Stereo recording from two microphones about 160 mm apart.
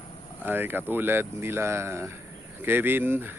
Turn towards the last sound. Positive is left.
turn(degrees=-15)  # may be behind; listen again after turning